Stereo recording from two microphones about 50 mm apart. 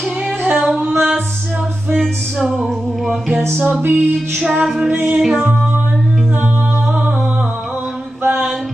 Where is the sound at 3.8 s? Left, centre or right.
Right.